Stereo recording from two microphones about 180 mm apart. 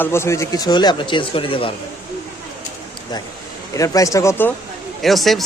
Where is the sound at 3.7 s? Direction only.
20° left (ahead or behind).